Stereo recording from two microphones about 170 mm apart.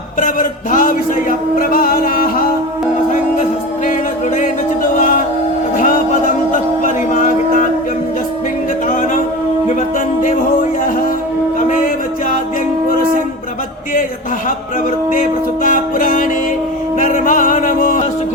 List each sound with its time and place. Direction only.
0.2 s music: 50° left (ahead or behind)
4.9 s music: 55° left (ahead or behind)
6.8 s a sound: 50° left (ahead or behind)
8.9 s music: 50° left (ahead or behind)
15.6 s music: 55° left (ahead or behind)